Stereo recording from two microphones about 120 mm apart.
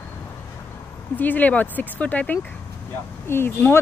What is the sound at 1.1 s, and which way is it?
Speech, 15° left (ahead or behind).